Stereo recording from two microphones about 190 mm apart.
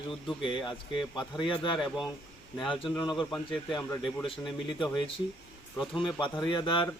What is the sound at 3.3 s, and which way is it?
Speech, centre (ahead or behind).